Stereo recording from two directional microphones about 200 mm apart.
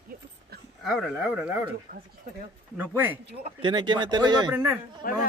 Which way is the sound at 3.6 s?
25° right (ahead or behind).